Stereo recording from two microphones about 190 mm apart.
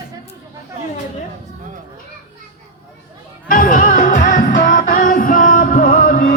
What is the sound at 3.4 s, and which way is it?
Music, 45° left (ahead or behind).